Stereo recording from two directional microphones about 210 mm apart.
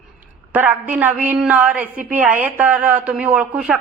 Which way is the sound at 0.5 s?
10° right (ahead or behind).